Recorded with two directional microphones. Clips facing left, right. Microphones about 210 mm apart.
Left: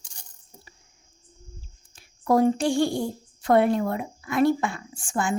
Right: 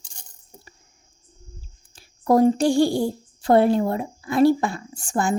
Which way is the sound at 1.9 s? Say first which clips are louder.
Right 3 dB; 35° right (ahead or behind).